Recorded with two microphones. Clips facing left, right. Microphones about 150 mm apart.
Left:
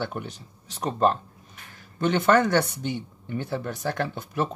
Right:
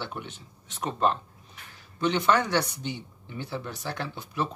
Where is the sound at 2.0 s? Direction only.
50° left (ahead or behind).